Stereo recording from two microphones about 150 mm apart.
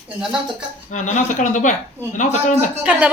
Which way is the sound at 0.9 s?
55° left (ahead or behind).